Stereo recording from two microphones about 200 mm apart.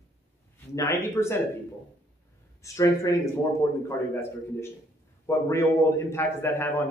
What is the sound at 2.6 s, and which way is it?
Speech, 15° left (ahead or behind).